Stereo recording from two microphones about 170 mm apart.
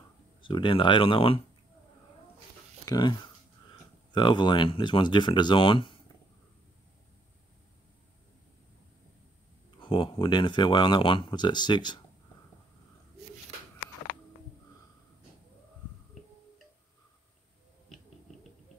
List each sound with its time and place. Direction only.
0.4 s speech: 30° left (ahead or behind)
2.8 s speech: 25° left (ahead or behind)
9.8 s speech: 30° left (ahead or behind)